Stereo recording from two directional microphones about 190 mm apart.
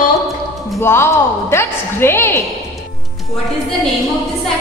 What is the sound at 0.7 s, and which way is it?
A woman's voice, 15° left (ahead or behind).